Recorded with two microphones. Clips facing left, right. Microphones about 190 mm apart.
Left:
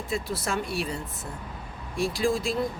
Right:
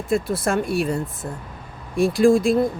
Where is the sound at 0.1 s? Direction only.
55° right (ahead or behind).